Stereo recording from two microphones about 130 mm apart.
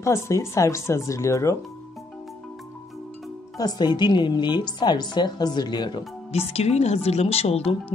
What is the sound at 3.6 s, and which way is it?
Speech, 30° left (ahead or behind).